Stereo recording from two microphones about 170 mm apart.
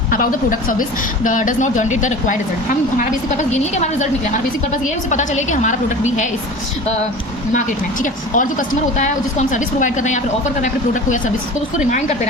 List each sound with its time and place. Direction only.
0.1 s a woman's voice: 55° left (ahead or behind)
8.0 s a woman's voice: 50° left (ahead or behind)
11.9 s a woman's voice: 45° left (ahead or behind)